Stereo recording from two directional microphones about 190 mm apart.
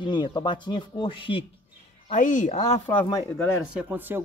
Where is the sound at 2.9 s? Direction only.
15° left (ahead or behind).